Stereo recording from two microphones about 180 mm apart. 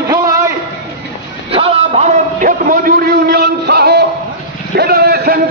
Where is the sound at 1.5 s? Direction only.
30° right (ahead or behind).